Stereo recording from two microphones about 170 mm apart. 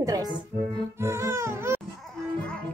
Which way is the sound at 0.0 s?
20° right (ahead or behind).